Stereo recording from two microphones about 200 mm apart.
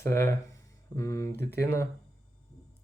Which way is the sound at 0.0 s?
15° left (ahead or behind).